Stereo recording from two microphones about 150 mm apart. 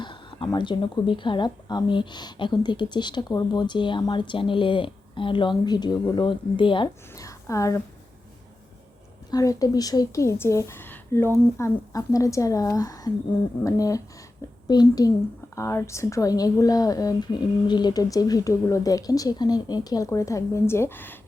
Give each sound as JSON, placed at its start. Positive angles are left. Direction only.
{"t": 0.0, "sound": "speech", "side_deg": 35}
{"t": 7.2, "sound": "a woman's voice", "side_deg": 20}
{"t": 9.3, "sound": "speech", "side_deg": 25}